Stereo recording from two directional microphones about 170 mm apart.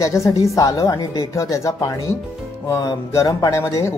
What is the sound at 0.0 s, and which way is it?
A woman's voice, 20° left (ahead or behind).